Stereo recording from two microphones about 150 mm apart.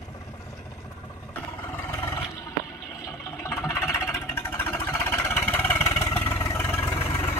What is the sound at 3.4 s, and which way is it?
Vehicle, 15° left (ahead or behind).